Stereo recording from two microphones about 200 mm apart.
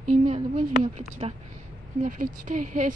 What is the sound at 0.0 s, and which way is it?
A woman's voice, 35° right (ahead or behind).